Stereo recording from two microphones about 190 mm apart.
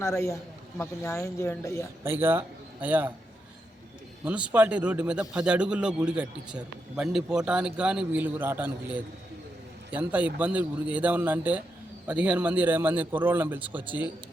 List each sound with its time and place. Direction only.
0.0 s speech: 15° left (ahead or behind)
2.0 s a man's voice: 10° right (ahead or behind)
4.2 s a man's voice: 5° right (ahead or behind)